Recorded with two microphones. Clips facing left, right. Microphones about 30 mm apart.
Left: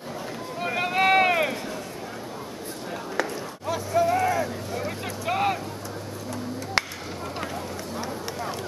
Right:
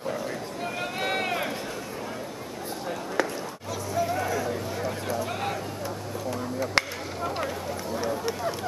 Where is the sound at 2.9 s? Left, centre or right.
Centre.